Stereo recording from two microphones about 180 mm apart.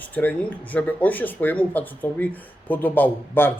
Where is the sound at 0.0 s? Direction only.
10° left (ahead or behind).